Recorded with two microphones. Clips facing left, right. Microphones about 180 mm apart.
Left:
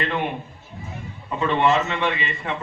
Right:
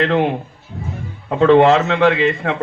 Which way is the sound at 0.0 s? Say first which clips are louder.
Right 9 dB; 80° right.